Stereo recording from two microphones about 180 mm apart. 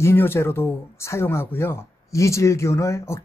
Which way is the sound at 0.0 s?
10° left (ahead or behind).